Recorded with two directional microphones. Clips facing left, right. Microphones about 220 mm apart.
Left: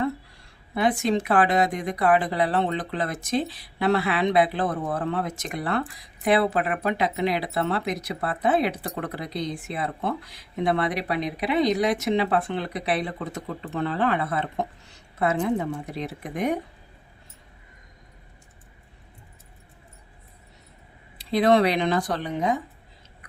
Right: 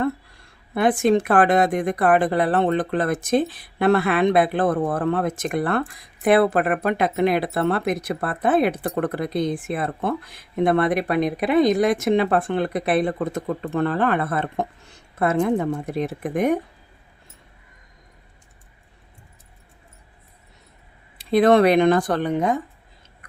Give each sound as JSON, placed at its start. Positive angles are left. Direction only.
{"t": 0.7, "sound": "speech", "side_deg": -50}
{"t": 21.2, "sound": "speech", "side_deg": -50}